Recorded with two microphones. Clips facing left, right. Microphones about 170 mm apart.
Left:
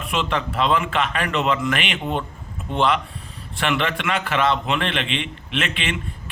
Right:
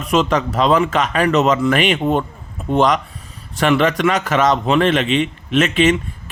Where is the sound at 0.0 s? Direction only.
40° right (ahead or behind).